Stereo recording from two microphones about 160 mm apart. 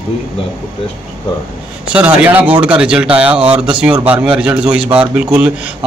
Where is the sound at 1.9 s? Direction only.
10° right (ahead or behind).